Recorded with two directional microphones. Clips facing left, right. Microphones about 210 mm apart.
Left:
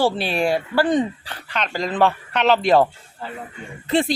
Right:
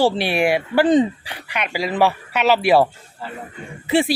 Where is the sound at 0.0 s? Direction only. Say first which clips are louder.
Right 2 dB; 10° right (ahead or behind).